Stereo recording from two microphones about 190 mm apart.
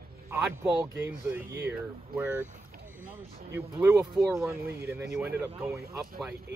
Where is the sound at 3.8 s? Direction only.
5° right (ahead or behind).